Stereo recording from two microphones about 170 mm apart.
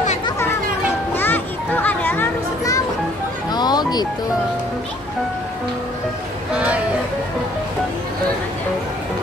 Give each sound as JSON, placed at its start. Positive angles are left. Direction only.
{"t": 1.1, "sound": "music", "side_deg": 10}
{"t": 6.5, "sound": "music", "side_deg": -10}